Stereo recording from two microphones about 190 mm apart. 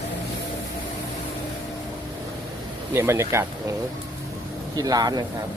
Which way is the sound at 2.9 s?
15° right (ahead or behind).